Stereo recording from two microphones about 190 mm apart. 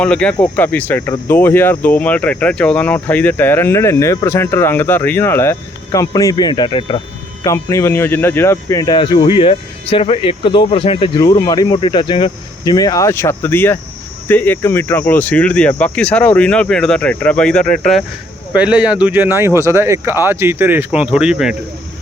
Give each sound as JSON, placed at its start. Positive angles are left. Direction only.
{"t": 0.0, "sound": "speech", "side_deg": 5}
{"t": 7.4, "sound": "speech", "side_deg": 15}